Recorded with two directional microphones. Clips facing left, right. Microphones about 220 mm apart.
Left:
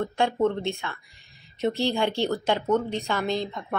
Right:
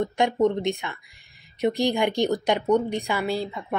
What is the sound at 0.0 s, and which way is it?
Speech, 20° right (ahead or behind).